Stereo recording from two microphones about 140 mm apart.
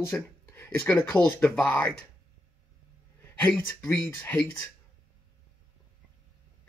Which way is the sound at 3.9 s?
10° left (ahead or behind).